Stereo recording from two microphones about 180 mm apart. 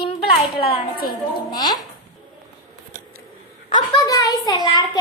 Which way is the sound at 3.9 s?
20° left (ahead or behind).